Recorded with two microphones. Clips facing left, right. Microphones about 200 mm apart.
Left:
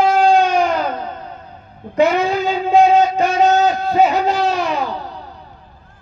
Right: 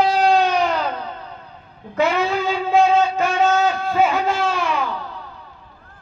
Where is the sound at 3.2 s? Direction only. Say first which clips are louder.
Left 4 dB; 40° left (ahead or behind).